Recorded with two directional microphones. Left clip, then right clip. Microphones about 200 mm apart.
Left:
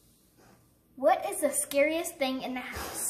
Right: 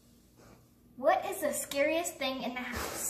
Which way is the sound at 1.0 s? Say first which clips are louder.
Left 3 dB; 45° left (ahead or behind).